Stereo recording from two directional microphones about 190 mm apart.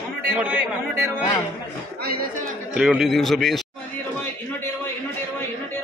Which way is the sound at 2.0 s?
50° right (ahead or behind).